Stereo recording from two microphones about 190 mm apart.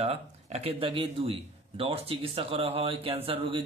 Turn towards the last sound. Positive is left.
turn(degrees=-30)  # may be behind; listen again after turning